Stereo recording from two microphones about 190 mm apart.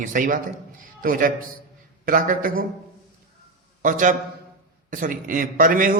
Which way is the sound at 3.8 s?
45° right (ahead or behind).